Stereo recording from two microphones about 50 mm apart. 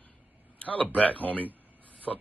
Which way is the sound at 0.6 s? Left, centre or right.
Left.